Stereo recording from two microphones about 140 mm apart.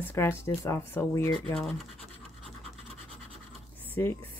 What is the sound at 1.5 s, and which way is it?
Scratch, 5° left (ahead or behind).